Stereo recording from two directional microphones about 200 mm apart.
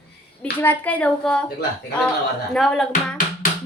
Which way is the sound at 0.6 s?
10° left (ahead or behind).